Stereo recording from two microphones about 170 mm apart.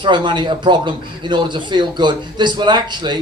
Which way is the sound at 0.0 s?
30° right (ahead or behind).